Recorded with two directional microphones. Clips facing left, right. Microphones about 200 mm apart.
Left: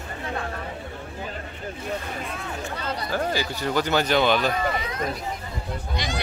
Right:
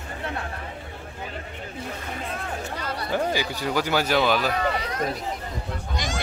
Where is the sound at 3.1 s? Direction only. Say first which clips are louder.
Right 2 dB; 15° right (ahead or behind).